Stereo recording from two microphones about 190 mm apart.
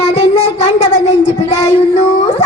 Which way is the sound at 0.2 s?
35° left (ahead or behind).